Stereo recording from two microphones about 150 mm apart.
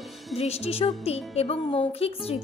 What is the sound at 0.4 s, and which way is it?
A woman's voice, 45° left (ahead or behind).